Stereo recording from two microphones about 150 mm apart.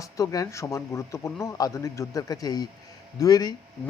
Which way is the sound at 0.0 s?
20° left (ahead or behind).